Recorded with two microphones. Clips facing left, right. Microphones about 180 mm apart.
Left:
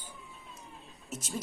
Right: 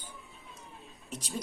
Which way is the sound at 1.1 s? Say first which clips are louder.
Left 1 dB; 5° left (ahead or behind).